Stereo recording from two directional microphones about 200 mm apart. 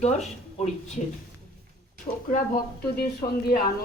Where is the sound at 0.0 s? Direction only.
35° left (ahead or behind).